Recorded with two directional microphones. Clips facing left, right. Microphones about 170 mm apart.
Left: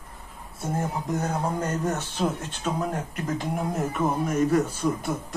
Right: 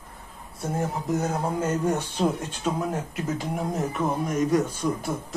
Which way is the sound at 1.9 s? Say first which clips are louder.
Right 2 dB; 10° right (ahead or behind).